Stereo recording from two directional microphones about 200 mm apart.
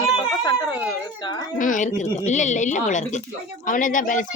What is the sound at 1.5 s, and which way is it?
A woman's voice, 40° left (ahead or behind).